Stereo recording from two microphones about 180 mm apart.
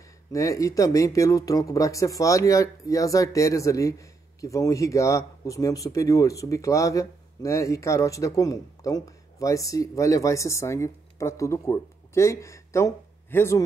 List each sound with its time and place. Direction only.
0.3 s speech: 20° left (ahead or behind)